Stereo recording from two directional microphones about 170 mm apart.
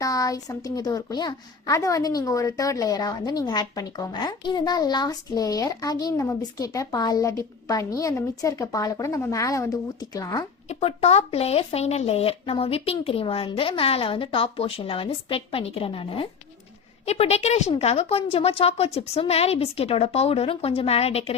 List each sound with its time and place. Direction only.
0.0 s a woman's voice: 20° left (ahead or behind)
10.7 s speech: 35° left (ahead or behind)